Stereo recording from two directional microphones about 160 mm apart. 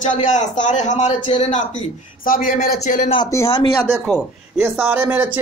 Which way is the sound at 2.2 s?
60° left (ahead or behind).